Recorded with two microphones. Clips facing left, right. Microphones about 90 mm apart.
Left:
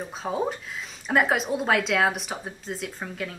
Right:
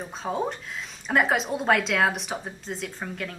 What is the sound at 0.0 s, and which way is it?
Speech, centre (ahead or behind).